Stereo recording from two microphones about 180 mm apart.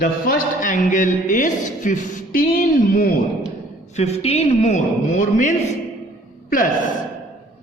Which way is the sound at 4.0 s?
35° left (ahead or behind).